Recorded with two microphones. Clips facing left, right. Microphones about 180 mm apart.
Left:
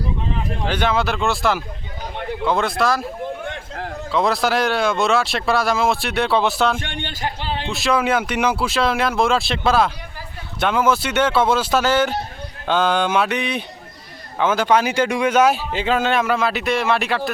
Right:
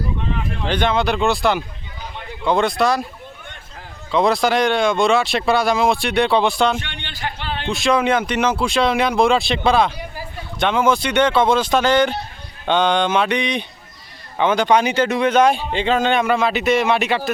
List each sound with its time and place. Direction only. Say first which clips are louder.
0.7 s speech: right 2 dB; 5° left (ahead or behind)
3.4 s a sound: left 10 dB; 85° left
4.1 s speech: right 3 dB; centre (ahead or behind)
6.7 s a man's voice: left 2 dB; 45° left (ahead or behind)
7.7 s speech: right 2 dB; 5° left (ahead or behind)